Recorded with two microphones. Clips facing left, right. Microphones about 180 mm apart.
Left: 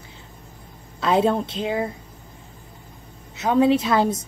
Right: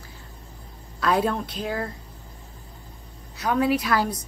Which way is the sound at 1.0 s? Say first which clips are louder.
Left 4 dB; 25° left (ahead or behind).